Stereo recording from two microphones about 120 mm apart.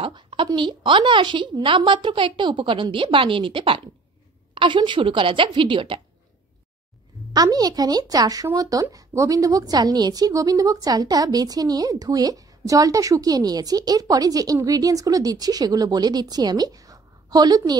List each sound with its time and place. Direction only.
0.0 s a sound: 45° right (ahead or behind)
0.5 s a woman's voice: 40° right (ahead or behind)
7.3 s a woman's voice: 35° right (ahead or behind)